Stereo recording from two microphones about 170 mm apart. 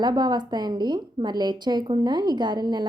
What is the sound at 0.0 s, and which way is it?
A woman's voice, 25° right (ahead or behind).